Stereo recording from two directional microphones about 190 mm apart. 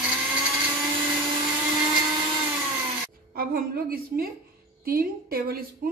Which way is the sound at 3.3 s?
50° right (ahead or behind).